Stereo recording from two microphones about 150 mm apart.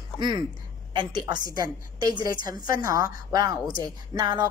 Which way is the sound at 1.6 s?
25° right (ahead or behind).